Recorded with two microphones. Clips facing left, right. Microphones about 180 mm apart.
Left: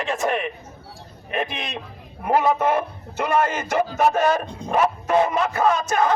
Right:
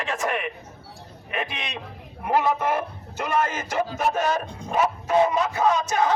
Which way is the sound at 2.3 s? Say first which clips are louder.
Left 3 dB; 50° left (ahead or behind).